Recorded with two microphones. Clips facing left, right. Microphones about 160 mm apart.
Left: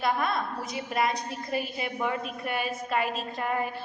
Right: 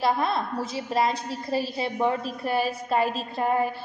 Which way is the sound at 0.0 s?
30° right (ahead or behind).